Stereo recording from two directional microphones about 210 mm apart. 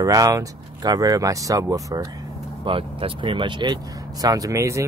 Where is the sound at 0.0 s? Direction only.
15° right (ahead or behind).